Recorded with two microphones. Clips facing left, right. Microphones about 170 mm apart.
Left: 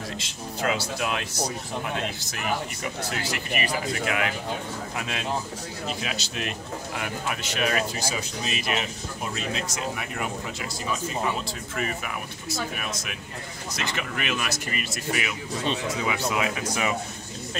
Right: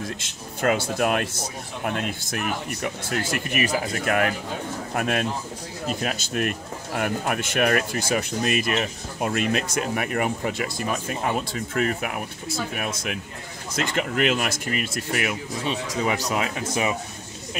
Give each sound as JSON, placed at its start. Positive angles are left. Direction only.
{"t": 0.2, "sound": "speech", "side_deg": -50}
{"t": 15.9, "sound": "speech", "side_deg": -40}
{"t": 16.6, "sound": "speech", "side_deg": -25}